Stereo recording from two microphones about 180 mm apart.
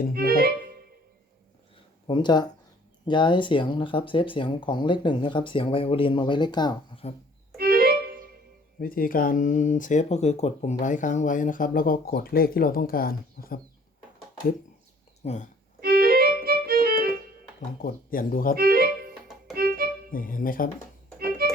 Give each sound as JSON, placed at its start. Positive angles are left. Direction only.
{"t": 0.3, "sound": "music", "side_deg": -55}
{"t": 2.0, "sound": "speech", "side_deg": 25}
{"t": 7.5, "sound": "music", "side_deg": -55}
{"t": 8.8, "sound": "speech", "side_deg": 50}
{"t": 15.2, "sound": "speech", "side_deg": 40}
{"t": 15.8, "sound": "music", "side_deg": -55}
{"t": 17.8, "sound": "speech", "side_deg": 50}
{"t": 18.5, "sound": "music", "side_deg": -55}
{"t": 20.1, "sound": "speech", "side_deg": 50}
{"t": 21.2, "sound": "music", "side_deg": -60}